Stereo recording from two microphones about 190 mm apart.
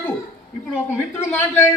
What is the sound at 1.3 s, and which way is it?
Speech, 10° left (ahead or behind).